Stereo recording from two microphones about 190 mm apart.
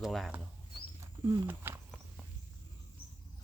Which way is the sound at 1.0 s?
20° right (ahead or behind).